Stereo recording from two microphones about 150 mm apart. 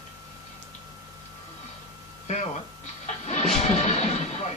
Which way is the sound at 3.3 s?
50° left (ahead or behind).